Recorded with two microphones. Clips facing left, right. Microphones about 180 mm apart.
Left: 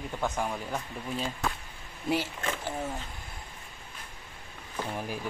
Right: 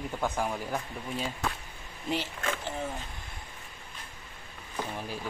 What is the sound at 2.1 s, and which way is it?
Speech, 10° left (ahead or behind).